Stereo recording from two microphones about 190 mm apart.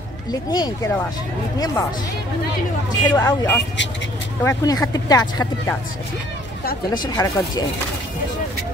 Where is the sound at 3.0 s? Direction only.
15° left (ahead or behind).